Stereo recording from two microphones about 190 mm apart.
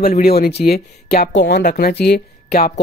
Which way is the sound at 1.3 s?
65° left (ahead or behind).